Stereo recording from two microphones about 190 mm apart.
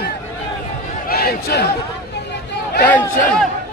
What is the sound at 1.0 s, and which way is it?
Speech, 55° left (ahead or behind).